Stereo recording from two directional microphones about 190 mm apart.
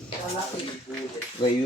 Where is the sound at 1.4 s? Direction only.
25° left (ahead or behind).